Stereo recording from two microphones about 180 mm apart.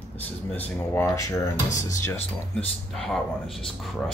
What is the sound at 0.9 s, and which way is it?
Speech, 15° left (ahead or behind).